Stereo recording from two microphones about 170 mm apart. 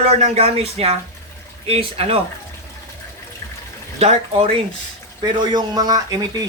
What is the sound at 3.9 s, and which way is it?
Speech, 35° right (ahead or behind).